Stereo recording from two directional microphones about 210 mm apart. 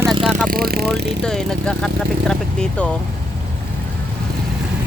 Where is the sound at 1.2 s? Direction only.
5° left (ahead or behind).